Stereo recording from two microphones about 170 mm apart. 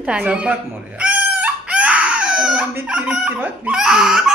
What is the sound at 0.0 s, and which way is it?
Chicken, 5° right (ahead or behind).